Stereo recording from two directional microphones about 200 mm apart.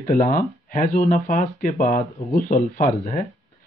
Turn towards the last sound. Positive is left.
turn(degrees=40)  # may be behind; listen again after turning